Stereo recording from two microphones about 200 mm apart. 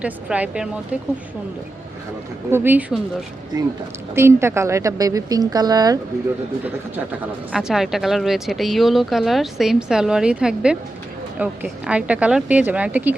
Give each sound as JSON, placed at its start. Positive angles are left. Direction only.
{"t": 0.0, "sound": "speech", "side_deg": -5}
{"t": 2.5, "sound": "a woman's voice", "side_deg": -10}
{"t": 4.1, "sound": "a woman's voice", "side_deg": -10}
{"t": 6.7, "sound": "a woman's voice", "side_deg": -5}